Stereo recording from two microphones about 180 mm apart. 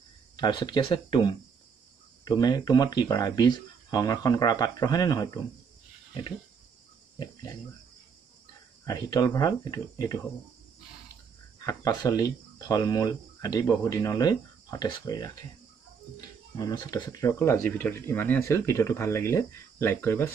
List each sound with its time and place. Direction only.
0.4 s speech: 25° left (ahead or behind)
8.8 s speech: 20° left (ahead or behind)
11.6 s speech: 20° left (ahead or behind)
16.5 s speech: 20° left (ahead or behind)